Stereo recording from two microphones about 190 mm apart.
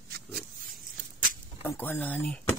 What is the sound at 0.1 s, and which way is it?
Pig, 50° right (ahead or behind).